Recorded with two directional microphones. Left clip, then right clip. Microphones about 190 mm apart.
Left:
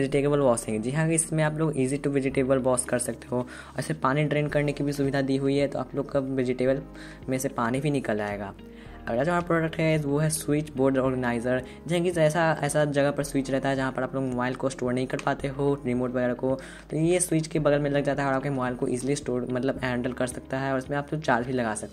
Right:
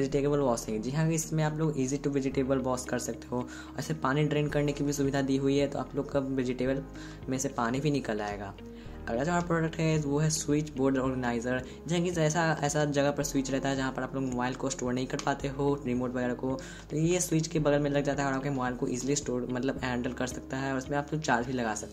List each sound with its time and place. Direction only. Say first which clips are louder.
0.0 s speech: left 5 dB; 25° left (ahead or behind)